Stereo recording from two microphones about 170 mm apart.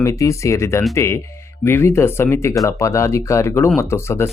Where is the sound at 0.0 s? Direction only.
20° left (ahead or behind).